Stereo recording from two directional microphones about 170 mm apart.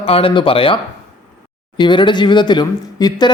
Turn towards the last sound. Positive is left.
turn(degrees=25)  # may be behind; listen again after turning